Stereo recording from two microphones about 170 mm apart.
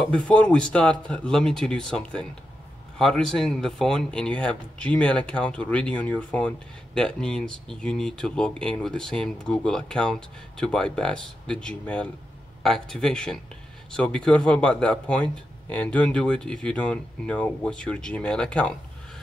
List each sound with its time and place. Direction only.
0.0 s a man's voice: 5° left (ahead or behind)